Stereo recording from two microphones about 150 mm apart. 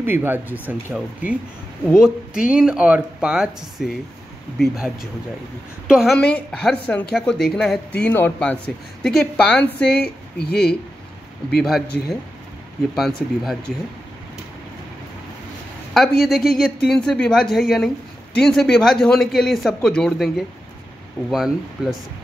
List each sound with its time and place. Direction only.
0.0 s speech: 15° right (ahead or behind); by 10.1 s 5° left (ahead or behind)
10.5 s speech: 90° left
11.5 s speech: centre (ahead or behind)
12.9 s speech: centre (ahead or behind)
15.9 s speech: 5° left (ahead or behind)